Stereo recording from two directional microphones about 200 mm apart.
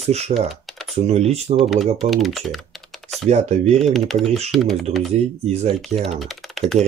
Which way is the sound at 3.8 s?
Centre (ahead or behind).